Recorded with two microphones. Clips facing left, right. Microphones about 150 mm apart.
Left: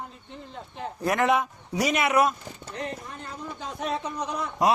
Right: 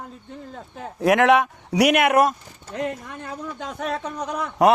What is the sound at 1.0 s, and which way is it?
A man's voice, 75° right (ahead or behind).